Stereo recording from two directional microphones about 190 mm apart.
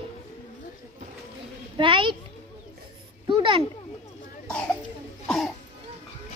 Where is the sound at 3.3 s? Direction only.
25° right (ahead or behind).